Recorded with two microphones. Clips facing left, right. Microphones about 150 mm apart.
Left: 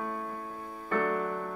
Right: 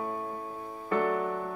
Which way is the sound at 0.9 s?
10° right (ahead or behind).